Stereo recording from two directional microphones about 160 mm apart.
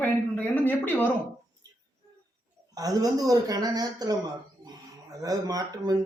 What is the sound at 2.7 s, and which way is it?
A man's voice, 25° right (ahead or behind).